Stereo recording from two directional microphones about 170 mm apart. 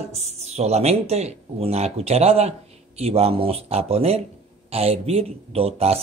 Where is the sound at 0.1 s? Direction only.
40° right (ahead or behind).